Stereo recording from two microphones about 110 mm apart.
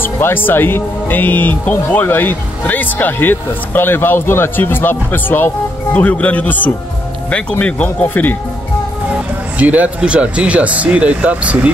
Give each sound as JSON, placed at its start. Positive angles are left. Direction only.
{"t": 0.0, "sound": "speech", "side_deg": 20}
{"t": 9.6, "sound": "speech", "side_deg": -15}